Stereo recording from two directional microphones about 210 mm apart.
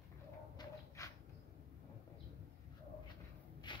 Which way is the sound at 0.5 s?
15° left (ahead or behind).